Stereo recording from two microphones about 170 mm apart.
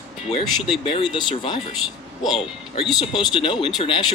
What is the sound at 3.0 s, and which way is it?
Speech, 30° left (ahead or behind).